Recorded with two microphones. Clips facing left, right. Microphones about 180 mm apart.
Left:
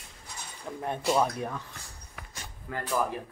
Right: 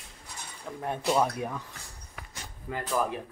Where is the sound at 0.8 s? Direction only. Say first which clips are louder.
Even; 5° right (ahead or behind).